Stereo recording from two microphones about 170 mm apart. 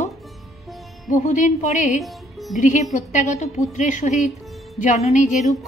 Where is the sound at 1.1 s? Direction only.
45° left (ahead or behind).